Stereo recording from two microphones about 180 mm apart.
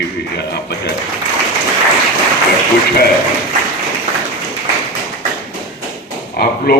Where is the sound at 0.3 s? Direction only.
65° left (ahead or behind).